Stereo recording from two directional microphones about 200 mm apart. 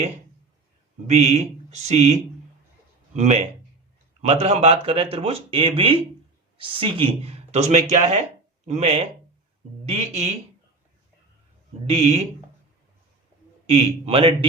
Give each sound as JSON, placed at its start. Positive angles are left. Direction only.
{"t": 1.0, "sound": "speech", "side_deg": -35}
{"t": 3.2, "sound": "speech", "side_deg": -30}
{"t": 11.9, "sound": "speech", "side_deg": -30}
{"t": 13.7, "sound": "speech", "side_deg": -30}